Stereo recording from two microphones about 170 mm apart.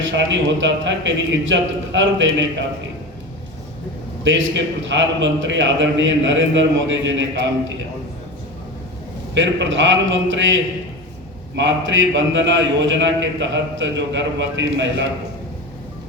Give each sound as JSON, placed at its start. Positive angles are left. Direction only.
{"t": 0.2, "sound": "a man's voice", "side_deg": -90}
{"t": 4.2, "sound": "a man's voice", "side_deg": -90}
{"t": 9.3, "sound": "a man's voice", "side_deg": -90}
{"t": 11.5, "sound": "a man's voice", "side_deg": -90}